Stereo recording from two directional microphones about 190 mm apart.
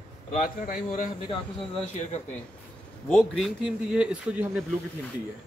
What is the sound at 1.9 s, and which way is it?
Speech, 35° left (ahead or behind).